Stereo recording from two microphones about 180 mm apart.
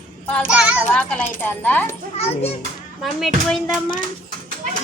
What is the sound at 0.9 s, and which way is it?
Speech, 10° left (ahead or behind).